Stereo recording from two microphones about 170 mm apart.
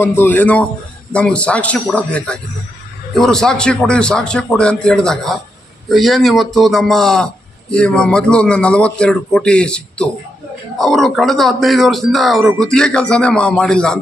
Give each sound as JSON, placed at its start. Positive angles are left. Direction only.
{"t": 0.0, "sound": "a man's voice", "side_deg": 10}